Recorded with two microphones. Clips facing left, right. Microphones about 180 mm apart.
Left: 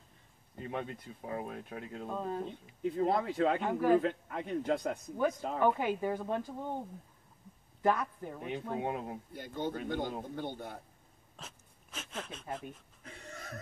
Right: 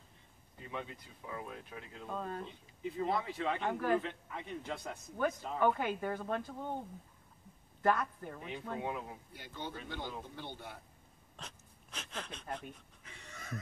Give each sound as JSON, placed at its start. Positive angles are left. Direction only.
{"t": 0.7, "sound": "speech", "side_deg": 50}
{"t": 2.0, "sound": "speech", "side_deg": 15}
{"t": 2.4, "sound": "speech", "side_deg": 50}
{"t": 3.6, "sound": "speech", "side_deg": 10}
{"t": 4.0, "sound": "speech", "side_deg": 45}
{"t": 5.6, "sound": "speech", "side_deg": 10}
{"t": 7.8, "sound": "speech", "side_deg": 10}
{"t": 8.8, "sound": "speech", "side_deg": 45}
{"t": 11.3, "sound": "dog", "side_deg": 5}
{"t": 13.0, "sound": "a sound", "side_deg": 45}